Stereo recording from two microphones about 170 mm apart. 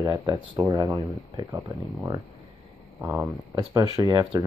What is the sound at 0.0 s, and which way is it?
Speech, 20° right (ahead or behind).